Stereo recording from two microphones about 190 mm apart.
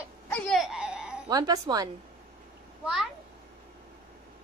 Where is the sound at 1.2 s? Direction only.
20° right (ahead or behind).